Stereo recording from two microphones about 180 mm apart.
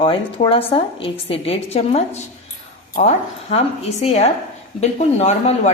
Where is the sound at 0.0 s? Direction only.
30° left (ahead or behind).